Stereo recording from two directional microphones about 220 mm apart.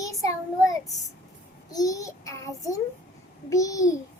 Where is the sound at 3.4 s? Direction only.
15° left (ahead or behind).